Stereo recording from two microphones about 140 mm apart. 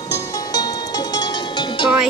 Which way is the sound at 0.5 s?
25° left (ahead or behind).